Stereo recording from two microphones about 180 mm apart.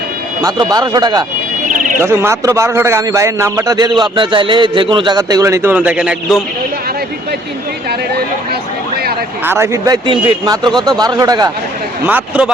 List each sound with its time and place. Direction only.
0.4 s a man's voice: 25° right (ahead or behind); by 6.4 s 5° right (ahead or behind)
9.4 s a man's voice: 15° right (ahead or behind)
12.0 s a man's voice: 10° right (ahead or behind)